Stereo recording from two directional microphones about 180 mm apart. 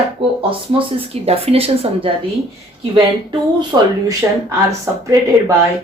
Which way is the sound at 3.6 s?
25° right (ahead or behind).